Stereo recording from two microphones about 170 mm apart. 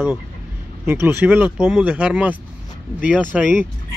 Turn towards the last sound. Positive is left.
turn(degrees=-10)  # may be behind; listen again after turning